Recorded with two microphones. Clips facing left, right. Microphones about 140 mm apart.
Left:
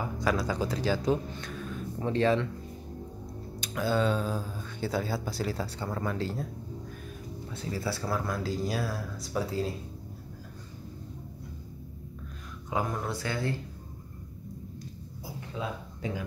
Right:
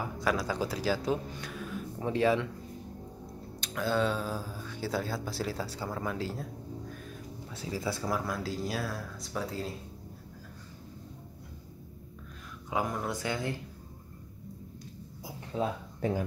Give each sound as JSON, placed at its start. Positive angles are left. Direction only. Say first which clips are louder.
{"t": 0.0, "sound": "speech", "louder": "left 2 dB", "side_deg": 0}
{"t": 3.6, "sound": "speech", "louder": "left 2 dB", "side_deg": 0}
{"t": 7.5, "sound": "speech", "louder": "left 1 dB", "side_deg": -10}
{"t": 12.6, "sound": "speech", "louder": "left 1 dB", "side_deg": -5}
{"t": 13.1, "sound": "speech", "louder": "left 1 dB", "side_deg": -15}
{"t": 15.5, "sound": "speech", "louder": "right 5 dB", "side_deg": -40}